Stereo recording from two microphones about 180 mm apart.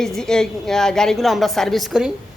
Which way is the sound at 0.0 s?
5° left (ahead or behind).